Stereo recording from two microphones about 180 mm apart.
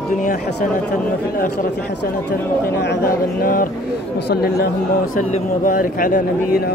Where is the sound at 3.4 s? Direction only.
50° left (ahead or behind).